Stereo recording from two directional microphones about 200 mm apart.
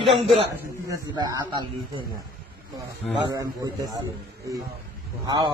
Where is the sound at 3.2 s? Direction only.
20° right (ahead or behind).